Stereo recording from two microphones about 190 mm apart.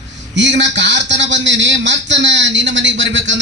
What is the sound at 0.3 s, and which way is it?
A man's voice, 70° right (ahead or behind).